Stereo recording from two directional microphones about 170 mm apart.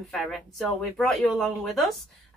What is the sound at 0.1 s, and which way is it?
Speech, centre (ahead or behind).